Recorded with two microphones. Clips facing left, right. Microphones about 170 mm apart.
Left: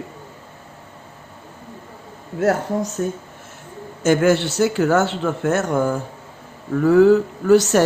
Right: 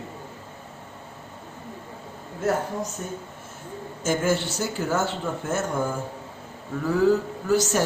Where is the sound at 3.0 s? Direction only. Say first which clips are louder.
Left 11 dB; 90° left.